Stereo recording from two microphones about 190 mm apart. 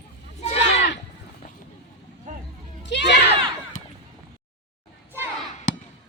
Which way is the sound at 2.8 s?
65° left (ahead or behind).